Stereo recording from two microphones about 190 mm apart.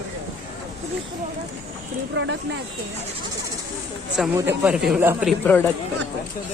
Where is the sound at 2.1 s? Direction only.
70° right (ahead or behind).